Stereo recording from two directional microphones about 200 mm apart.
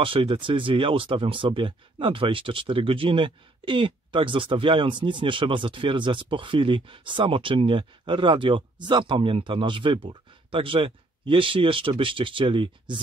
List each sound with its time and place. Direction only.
0.0 s speech: 25° right (ahead or behind)